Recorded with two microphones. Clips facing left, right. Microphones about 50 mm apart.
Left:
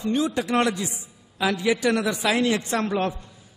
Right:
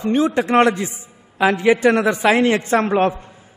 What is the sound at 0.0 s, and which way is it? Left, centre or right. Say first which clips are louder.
A man's voice: right 6 dB; right.